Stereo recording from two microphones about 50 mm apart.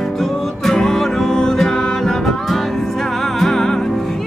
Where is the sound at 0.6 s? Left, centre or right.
Centre.